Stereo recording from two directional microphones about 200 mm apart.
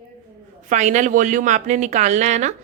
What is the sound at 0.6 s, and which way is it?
A woman's voice, 35° right (ahead or behind).